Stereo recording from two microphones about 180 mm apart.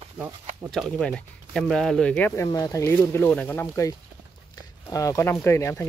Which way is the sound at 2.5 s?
20° left (ahead or behind).